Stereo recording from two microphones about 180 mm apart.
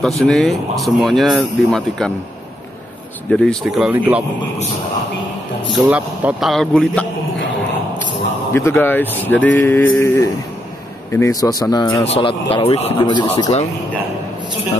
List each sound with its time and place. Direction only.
0.0 s speech: 5° left (ahead or behind)
3.3 s speech: centre (ahead or behind)
5.7 s speech: 5° right (ahead or behind)
8.5 s speech: 15° left (ahead or behind)
9.4 s a sound: 90° left
9.9 s a man's voice: 15° left (ahead or behind)